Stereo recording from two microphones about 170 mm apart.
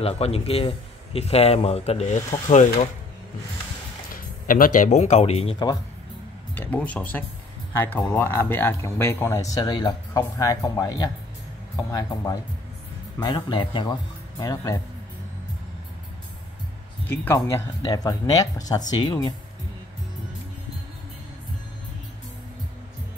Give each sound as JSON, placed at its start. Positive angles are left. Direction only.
{"t": 0.0, "sound": "speech", "side_deg": 35}
{"t": 4.1, "sound": "speech", "side_deg": 55}
{"t": 6.5, "sound": "speech", "side_deg": 10}
{"t": 17.1, "sound": "speech", "side_deg": 15}